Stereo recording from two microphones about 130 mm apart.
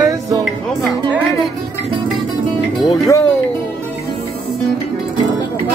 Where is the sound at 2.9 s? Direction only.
25° left (ahead or behind).